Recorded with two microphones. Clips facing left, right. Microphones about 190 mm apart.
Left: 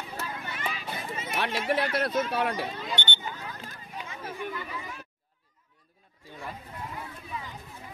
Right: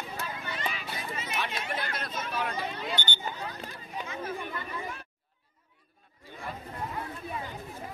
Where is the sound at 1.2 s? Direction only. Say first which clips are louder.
Left 5 dB; 60° left (ahead or behind).